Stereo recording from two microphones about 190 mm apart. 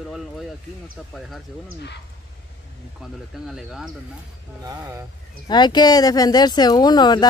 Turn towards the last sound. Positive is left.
turn(degrees=20)  # may be behind; listen again after turning